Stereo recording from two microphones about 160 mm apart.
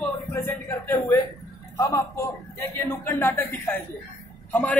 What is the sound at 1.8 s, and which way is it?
A man's voice, 20° left (ahead or behind).